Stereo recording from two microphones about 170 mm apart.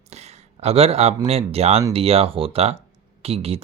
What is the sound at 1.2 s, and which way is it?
Speech, 35° right (ahead or behind).